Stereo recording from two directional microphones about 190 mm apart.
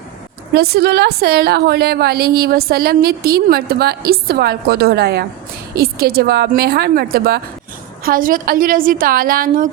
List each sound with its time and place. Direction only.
0.5 s a woman's voice: 55° right (ahead or behind)